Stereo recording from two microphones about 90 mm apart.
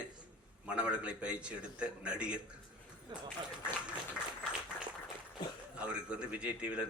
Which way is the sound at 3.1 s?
50° right (ahead or behind).